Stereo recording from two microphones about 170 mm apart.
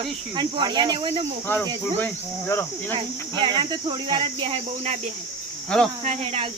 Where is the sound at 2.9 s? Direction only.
25° right (ahead or behind).